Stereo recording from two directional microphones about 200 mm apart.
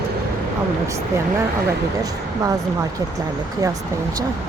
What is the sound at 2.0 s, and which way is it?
Speech, 15° right (ahead or behind).